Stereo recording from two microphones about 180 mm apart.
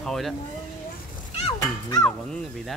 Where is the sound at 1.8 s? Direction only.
15° left (ahead or behind).